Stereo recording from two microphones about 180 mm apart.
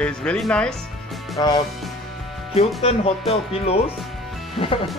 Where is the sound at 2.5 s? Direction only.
35° left (ahead or behind).